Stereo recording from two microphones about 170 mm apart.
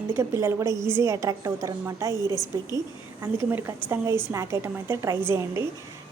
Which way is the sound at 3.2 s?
15° right (ahead or behind).